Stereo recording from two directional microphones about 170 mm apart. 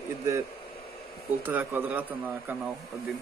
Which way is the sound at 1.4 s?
10° right (ahead or behind).